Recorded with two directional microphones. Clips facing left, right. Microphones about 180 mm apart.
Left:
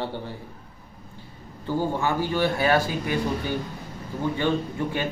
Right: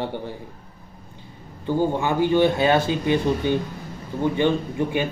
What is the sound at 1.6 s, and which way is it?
Speech, 15° right (ahead or behind).